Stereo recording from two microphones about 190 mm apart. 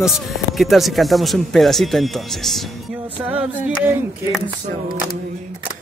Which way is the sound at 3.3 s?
5° right (ahead or behind).